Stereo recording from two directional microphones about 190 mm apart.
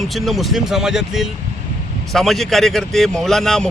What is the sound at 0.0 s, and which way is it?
A man's voice, centre (ahead or behind).